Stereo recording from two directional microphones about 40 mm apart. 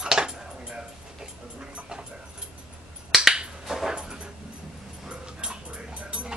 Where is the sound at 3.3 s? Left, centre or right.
Centre.